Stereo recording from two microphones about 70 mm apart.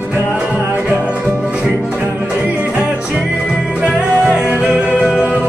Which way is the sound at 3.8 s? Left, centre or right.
Centre.